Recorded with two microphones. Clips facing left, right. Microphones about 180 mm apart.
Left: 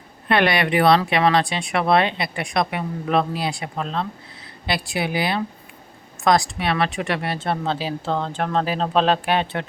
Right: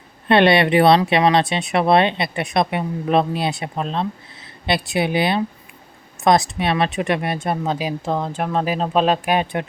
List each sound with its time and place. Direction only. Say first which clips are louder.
0.3 s speech: right 5 dB; 25° right (ahead or behind)